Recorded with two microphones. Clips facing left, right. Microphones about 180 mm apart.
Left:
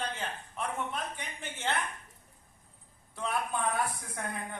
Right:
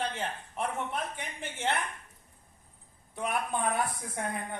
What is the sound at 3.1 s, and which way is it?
Speech, 20° right (ahead or behind).